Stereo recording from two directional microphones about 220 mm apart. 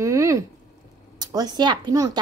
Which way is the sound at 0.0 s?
15° right (ahead or behind).